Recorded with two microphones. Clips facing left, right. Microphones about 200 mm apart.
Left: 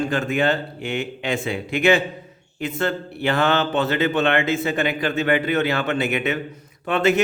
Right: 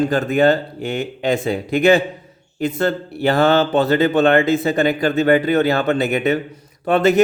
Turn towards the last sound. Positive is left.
turn(degrees=-40)  # may be behind; listen again after turning